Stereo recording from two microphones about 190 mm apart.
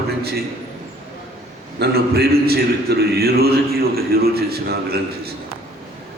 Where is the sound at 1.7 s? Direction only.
55° right (ahead or behind).